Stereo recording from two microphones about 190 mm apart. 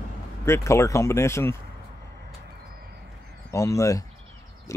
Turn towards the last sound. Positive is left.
turn(degrees=15)  # may be behind; listen again after turning